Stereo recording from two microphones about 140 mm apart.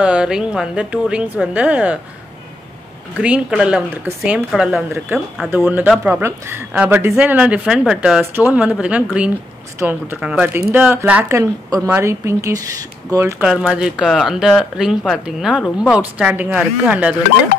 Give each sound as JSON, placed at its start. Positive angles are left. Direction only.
{"t": 0.0, "sound": "speech", "side_deg": -5}
{"t": 3.2, "sound": "speech", "side_deg": -5}
{"t": 4.5, "sound": "speech", "side_deg": 0}
{"t": 5.5, "sound": "speech", "side_deg": -15}
{"t": 13.4, "sound": "speech", "side_deg": -5}
{"t": 15.6, "sound": "speech", "side_deg": 10}
{"t": 16.0, "sound": "speech", "side_deg": -10}